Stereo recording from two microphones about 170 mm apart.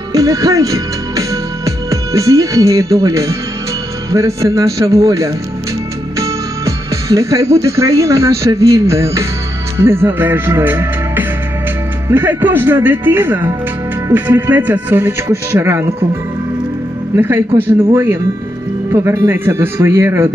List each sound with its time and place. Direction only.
0.1 s music: 20° right (ahead or behind)
1.9 s speech: 20° right (ahead or behind)
17.1 s speech: 15° right (ahead or behind)
18.9 s speech: 20° right (ahead or behind)